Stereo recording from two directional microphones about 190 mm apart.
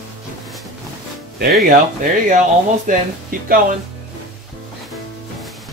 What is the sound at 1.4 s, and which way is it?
Speech, 55° right (ahead or behind).